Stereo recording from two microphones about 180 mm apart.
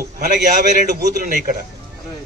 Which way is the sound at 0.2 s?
45° right (ahead or behind).